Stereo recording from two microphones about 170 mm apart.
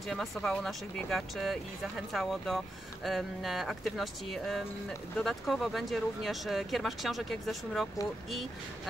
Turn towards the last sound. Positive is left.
turn(degrees=0)  # may be behind; listen again after turning